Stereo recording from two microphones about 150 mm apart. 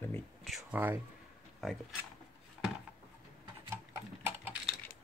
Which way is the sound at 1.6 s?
Centre (ahead or behind).